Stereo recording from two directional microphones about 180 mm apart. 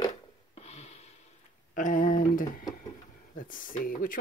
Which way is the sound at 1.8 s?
50° left (ahead or behind).